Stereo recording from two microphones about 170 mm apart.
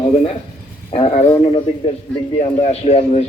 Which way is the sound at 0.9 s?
35° left (ahead or behind).